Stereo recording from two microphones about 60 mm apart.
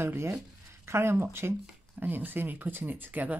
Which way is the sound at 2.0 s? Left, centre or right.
Right.